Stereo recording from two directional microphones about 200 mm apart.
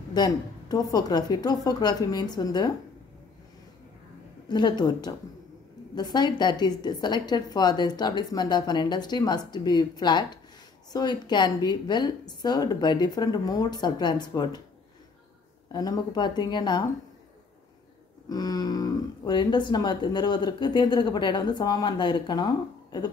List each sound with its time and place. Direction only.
0.1 s speech: 20° left (ahead or behind)
4.5 s speech: 20° left (ahead or behind)
15.7 s speech: 20° left (ahead or behind)
18.3 s speech: 20° left (ahead or behind)